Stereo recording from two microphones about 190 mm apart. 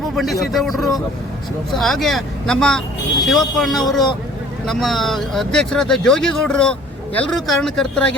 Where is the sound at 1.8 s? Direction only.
Centre (ahead or behind).